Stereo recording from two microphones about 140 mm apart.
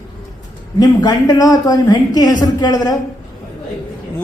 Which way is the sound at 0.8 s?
25° left (ahead or behind).